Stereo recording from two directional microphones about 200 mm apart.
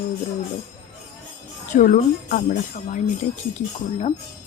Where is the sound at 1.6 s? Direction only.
40° left (ahead or behind).